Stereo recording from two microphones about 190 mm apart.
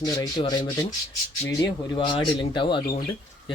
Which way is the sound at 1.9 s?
25° left (ahead or behind).